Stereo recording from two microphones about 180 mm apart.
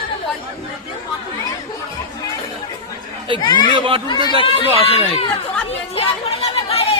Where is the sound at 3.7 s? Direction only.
30° right (ahead or behind).